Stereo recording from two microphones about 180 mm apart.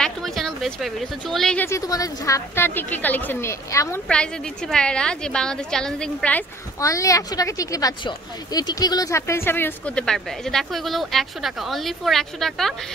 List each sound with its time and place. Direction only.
0.0 s speech: centre (ahead or behind)
1.7 s a woman's voice: 20° left (ahead or behind)
4.1 s speech: 5° left (ahead or behind)
6.8 s speech: 20° left (ahead or behind); by 12.7 s centre (ahead or behind)